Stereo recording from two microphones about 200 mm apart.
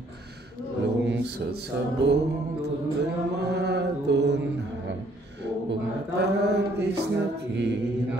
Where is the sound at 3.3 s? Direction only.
55° right (ahead or behind).